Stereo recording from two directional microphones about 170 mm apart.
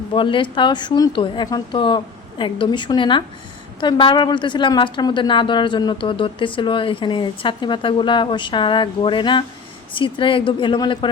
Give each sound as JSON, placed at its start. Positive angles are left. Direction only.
{"t": 0.1, "sound": "a woman's voice", "side_deg": 30}